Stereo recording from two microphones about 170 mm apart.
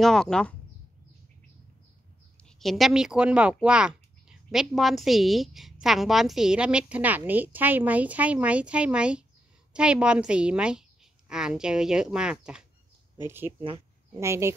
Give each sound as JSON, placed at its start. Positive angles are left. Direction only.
{"t": 0.0, "sound": "a woman's voice", "side_deg": 5}
{"t": 2.6, "sound": "a woman's voice", "side_deg": 0}